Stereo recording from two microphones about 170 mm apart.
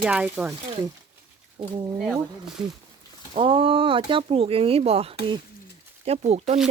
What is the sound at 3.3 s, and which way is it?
Speech, 30° right (ahead or behind).